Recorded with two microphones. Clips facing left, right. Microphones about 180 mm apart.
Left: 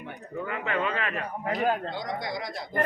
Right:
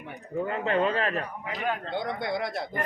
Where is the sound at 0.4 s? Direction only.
35° right (ahead or behind).